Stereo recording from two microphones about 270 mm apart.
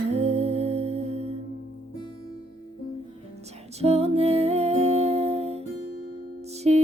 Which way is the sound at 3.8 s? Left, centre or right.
Right.